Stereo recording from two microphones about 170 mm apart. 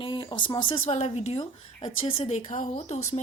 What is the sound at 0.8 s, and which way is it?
Speech, 40° left (ahead or behind).